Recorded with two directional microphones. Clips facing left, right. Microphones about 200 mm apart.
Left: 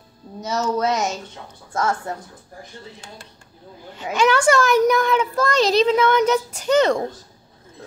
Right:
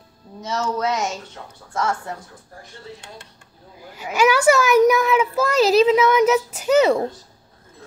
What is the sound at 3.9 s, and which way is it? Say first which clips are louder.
A child's voice: right 1 dB; 10° right (ahead or behind).